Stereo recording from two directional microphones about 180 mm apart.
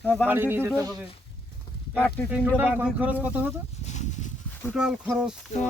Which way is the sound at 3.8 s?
40° left (ahead or behind).